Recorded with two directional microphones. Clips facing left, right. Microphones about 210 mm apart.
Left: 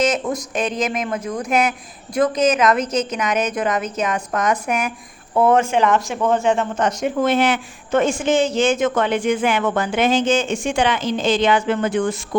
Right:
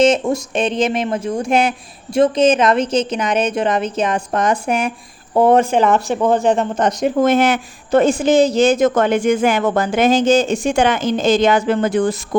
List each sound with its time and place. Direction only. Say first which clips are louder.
0.0 s a woman's voice: right 6 dB; 30° right (ahead or behind)